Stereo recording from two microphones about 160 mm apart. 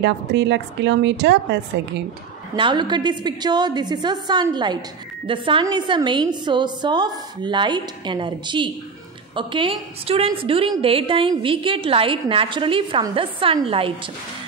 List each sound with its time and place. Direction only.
0.0 s a woman's voice: 90° right
2.5 s a woman's voice: 30° right (ahead or behind)